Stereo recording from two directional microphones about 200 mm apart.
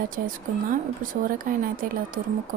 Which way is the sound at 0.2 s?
45° right (ahead or behind).